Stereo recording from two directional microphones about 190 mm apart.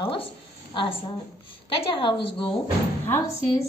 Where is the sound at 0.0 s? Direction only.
25° left (ahead or behind).